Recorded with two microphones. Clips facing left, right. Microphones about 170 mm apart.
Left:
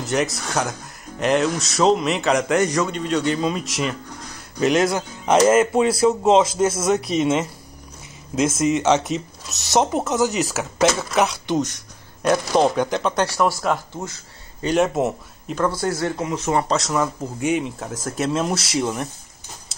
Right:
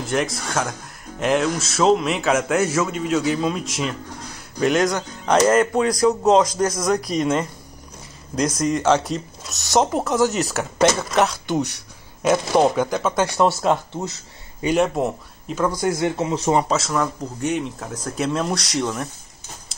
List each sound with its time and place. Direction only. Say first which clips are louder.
0.0 s speech: left 1 dB; centre (ahead or behind)
8.5 s speech: even; 5° left (ahead or behind)
13.2 s speech: right 3 dB; 20° right (ahead or behind)
14.8 s speech: left 2 dB; centre (ahead or behind)
15.7 s speech: right 2 dB; 15° right (ahead or behind)
16.6 s speech: even; centre (ahead or behind)